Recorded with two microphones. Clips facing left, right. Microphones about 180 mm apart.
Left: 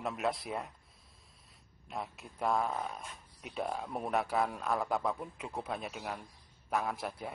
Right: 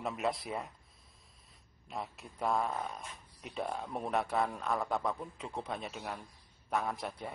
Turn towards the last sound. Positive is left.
turn(degrees=0)  # may be behind; listen again after turning